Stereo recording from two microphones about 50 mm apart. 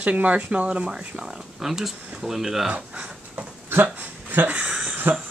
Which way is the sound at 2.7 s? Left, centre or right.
Right.